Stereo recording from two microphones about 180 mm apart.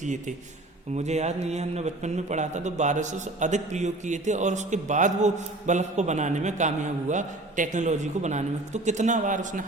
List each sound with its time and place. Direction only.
0.0 s a man's voice: 40° right (ahead or behind)